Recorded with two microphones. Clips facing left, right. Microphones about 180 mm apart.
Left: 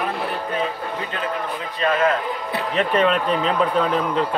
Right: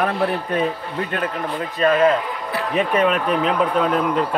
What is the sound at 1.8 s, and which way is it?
Speech, 40° right (ahead or behind).